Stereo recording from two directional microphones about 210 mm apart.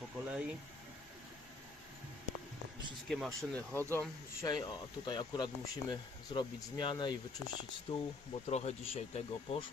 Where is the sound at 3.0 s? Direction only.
Centre (ahead or behind).